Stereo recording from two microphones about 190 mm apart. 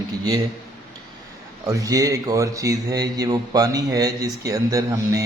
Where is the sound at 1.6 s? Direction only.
15° right (ahead or behind).